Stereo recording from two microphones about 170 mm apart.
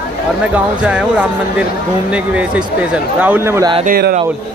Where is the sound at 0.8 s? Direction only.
5° right (ahead or behind).